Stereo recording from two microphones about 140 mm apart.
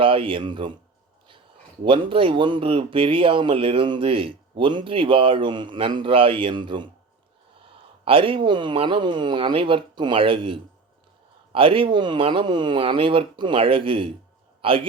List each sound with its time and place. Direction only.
0.0 s speech: 40° right (ahead or behind)
1.8 s speech: 35° right (ahead or behind)
8.0 s speech: 40° right (ahead or behind)